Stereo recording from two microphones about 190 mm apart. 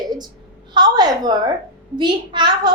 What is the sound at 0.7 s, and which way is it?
A woman's voice, 20° right (ahead or behind).